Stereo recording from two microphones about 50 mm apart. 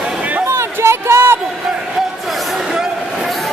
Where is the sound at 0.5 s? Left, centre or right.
Right.